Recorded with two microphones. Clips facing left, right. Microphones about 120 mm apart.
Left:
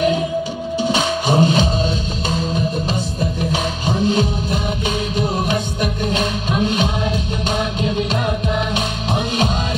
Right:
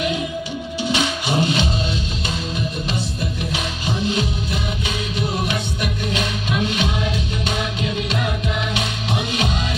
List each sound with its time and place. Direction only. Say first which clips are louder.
0.8 s music: left 3 dB; 40° left (ahead or behind)
6.1 s music: left 3 dB; 40° left (ahead or behind)
8.7 s music: left 3 dB; 40° left (ahead or behind)